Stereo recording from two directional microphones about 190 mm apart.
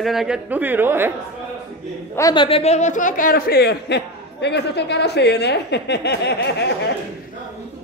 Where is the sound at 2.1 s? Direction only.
20° left (ahead or behind); by 6.6 s 65° left (ahead or behind).